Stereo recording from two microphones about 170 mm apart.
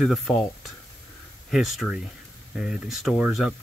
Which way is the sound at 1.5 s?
Centre (ahead or behind).